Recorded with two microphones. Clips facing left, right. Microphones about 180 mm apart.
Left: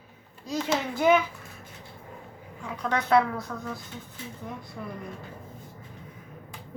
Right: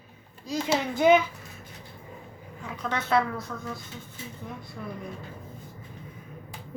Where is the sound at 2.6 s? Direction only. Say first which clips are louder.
Left 3 dB; 5° right (ahead or behind).